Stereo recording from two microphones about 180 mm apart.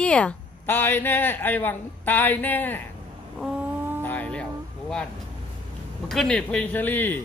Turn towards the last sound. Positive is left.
turn(degrees=10)  # may be behind; listen again after turning